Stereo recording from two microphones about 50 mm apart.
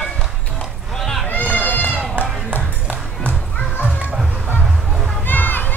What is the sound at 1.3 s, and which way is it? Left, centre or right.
Run, left.